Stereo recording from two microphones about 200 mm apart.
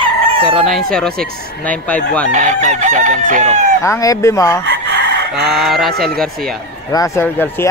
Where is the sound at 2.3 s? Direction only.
35° right (ahead or behind).